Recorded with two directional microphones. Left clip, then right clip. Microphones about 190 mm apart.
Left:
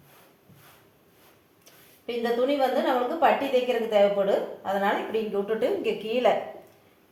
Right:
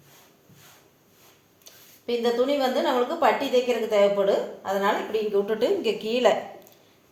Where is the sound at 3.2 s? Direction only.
35° right (ahead or behind).